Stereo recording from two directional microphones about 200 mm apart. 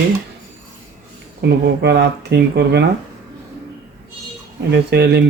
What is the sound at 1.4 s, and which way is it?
Speech, 55° right (ahead or behind).